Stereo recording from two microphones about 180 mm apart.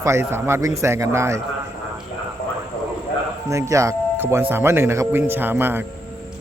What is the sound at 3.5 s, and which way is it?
Speech, 15° right (ahead or behind).